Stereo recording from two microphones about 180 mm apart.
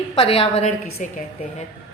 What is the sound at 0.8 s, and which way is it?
Speech, 60° left (ahead or behind).